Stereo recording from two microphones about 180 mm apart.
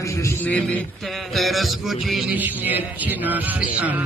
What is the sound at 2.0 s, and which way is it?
Music, centre (ahead or behind).